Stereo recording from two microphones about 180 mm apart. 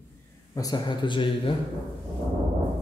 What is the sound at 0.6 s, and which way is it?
Speech, 25° left (ahead or behind).